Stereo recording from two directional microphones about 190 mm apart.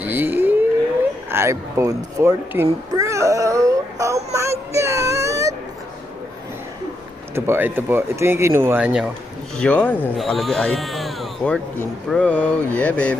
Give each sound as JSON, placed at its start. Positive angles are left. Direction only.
{"t": 0.0, "sound": "a sound", "side_deg": -10}
{"t": 1.3, "sound": "speech", "side_deg": -15}
{"t": 2.9, "sound": "a sound", "side_deg": -15}
{"t": 4.7, "sound": "whimper", "side_deg": -15}
{"t": 7.3, "sound": "speech", "side_deg": -10}
{"t": 9.6, "sound": "speech", "side_deg": 5}
{"t": 12.0, "sound": "mantra", "side_deg": 5}